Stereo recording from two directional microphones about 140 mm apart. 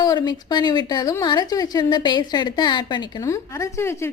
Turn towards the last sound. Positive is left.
turn(degrees=20)  # may be behind; listen again after turning